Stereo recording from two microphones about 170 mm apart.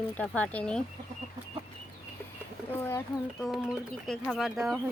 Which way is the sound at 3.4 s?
Centre (ahead or behind).